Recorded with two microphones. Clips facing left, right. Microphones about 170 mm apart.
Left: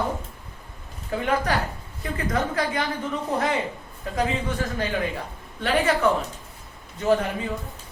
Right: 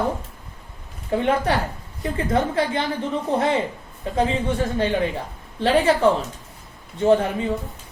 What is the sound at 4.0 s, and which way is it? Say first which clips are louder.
A woman's voice: right 4 dB; 30° right (ahead or behind).